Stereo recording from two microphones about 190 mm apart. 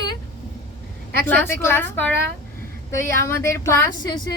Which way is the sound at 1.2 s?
10° left (ahead or behind).